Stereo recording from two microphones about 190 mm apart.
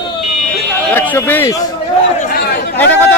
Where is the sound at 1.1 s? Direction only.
10° left (ahead or behind).